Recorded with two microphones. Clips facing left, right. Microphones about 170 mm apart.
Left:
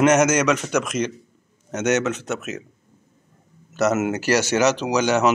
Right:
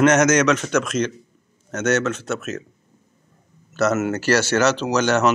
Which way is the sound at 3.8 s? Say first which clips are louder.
Even; 15° left (ahead or behind).